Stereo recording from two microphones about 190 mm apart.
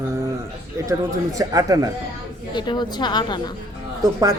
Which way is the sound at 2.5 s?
25° left (ahead or behind).